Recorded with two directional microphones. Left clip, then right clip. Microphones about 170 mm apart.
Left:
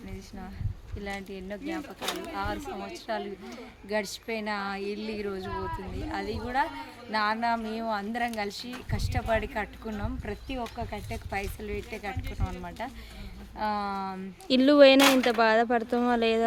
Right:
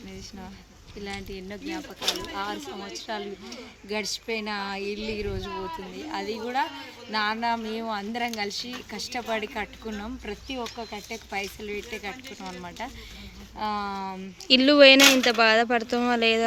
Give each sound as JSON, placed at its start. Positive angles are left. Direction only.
{"t": 1.0, "sound": "speech", "side_deg": 15}
{"t": 1.7, "sound": "speech", "side_deg": 5}
{"t": 15.0, "sound": "speech", "side_deg": 30}
{"t": 15.3, "sound": "speech", "side_deg": 0}